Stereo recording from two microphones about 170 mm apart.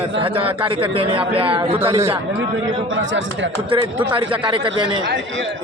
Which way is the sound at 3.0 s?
90° right.